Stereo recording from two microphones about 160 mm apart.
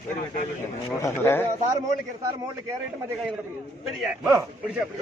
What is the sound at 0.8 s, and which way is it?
Speech, 20° left (ahead or behind).